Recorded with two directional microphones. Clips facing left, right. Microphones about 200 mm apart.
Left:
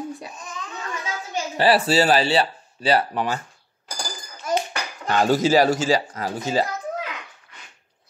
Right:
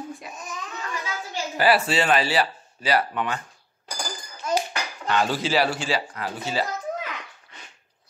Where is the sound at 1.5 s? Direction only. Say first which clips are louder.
Left 3 dB; 30° left (ahead or behind).